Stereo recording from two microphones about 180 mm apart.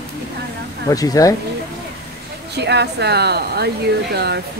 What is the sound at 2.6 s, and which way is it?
Speech, 70° right (ahead or behind).